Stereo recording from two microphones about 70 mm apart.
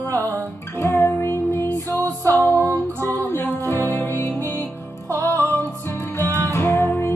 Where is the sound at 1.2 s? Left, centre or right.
Left.